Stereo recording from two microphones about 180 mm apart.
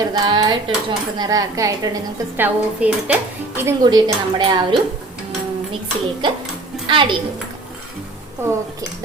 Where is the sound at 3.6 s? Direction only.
25° right (ahead or behind).